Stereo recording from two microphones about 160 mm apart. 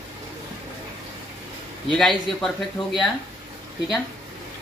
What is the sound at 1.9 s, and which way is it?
A man's voice, centre (ahead or behind).